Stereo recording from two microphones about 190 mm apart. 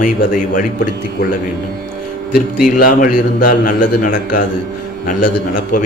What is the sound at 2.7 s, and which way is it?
A man's voice, 45° left (ahead or behind).